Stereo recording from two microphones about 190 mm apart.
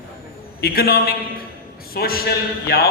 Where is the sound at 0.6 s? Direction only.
55° left (ahead or behind).